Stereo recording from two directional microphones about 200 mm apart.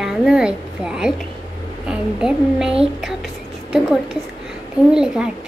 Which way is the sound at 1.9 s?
5° right (ahead or behind).